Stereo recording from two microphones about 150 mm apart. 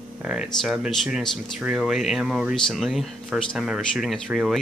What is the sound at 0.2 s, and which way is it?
Speech, 5° right (ahead or behind).